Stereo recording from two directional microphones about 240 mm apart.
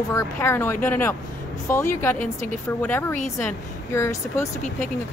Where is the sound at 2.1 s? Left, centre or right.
Left.